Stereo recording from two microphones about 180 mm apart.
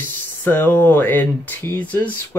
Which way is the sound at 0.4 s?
10° left (ahead or behind).